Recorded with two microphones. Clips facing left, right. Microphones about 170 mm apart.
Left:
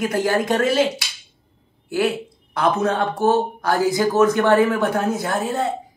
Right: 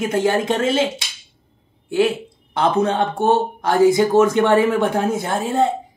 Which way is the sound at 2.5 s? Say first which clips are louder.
Right 2 dB; 30° right (ahead or behind).